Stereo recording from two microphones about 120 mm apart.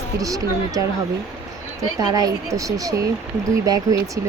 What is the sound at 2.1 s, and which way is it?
Speech, 30° right (ahead or behind).